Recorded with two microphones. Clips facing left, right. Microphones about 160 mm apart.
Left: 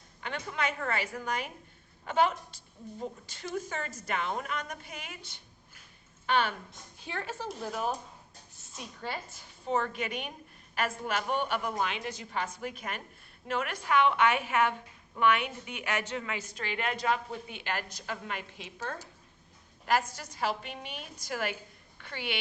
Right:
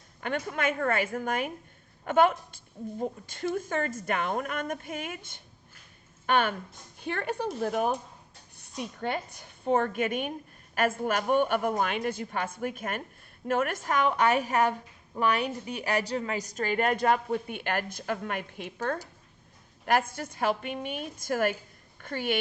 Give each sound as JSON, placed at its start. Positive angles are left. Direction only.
{"t": 0.2, "sound": "a woman's voice", "side_deg": -50}
{"t": 8.5, "sound": "a sound", "side_deg": -60}
{"t": 9.4, "sound": "a woman's voice", "side_deg": -55}